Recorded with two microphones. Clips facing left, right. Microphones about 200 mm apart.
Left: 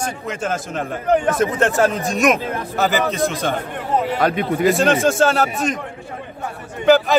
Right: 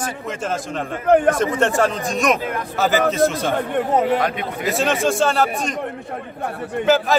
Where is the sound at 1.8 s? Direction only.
5° left (ahead or behind).